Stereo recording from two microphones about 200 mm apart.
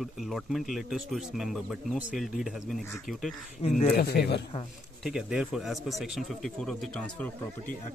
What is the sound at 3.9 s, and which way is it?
Speech, 50° left (ahead or behind).